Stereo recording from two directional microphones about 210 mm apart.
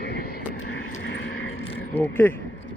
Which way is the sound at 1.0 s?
60° left (ahead or behind).